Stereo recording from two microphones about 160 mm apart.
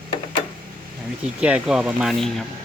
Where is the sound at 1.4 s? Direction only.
5° right (ahead or behind).